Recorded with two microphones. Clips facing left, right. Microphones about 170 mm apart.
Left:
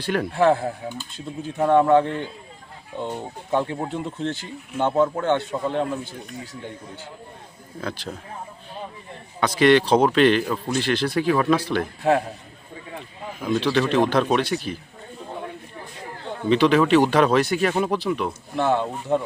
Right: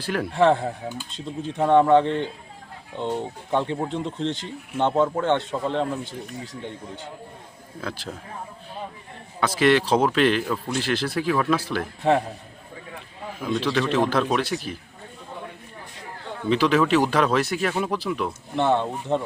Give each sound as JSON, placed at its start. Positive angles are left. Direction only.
{"t": 0.0, "sound": "speech", "side_deg": 0}
{"t": 1.1, "sound": "speech", "side_deg": -25}
{"t": 1.5, "sound": "speech", "side_deg": 5}
{"t": 9.4, "sound": "speech", "side_deg": -5}
{"t": 13.5, "sound": "speech", "side_deg": 0}
{"t": 16.5, "sound": "speech", "side_deg": 0}